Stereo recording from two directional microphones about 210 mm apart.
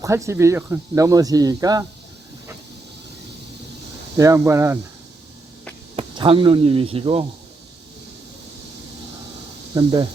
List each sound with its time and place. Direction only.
0.0 s speech: 15° right (ahead or behind)
4.2 s speech: 15° right (ahead or behind)
6.0 s speech: 25° right (ahead or behind)
9.7 s speech: 20° right (ahead or behind)